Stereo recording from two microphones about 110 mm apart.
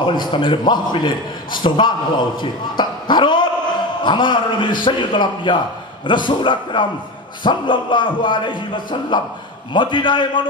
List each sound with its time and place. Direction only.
0.0 s a man's voice: 45° left (ahead or behind)
2.8 s basketball bounce: 45° left (ahead or behind)
4.0 s a man's voice: 45° left (ahead or behind)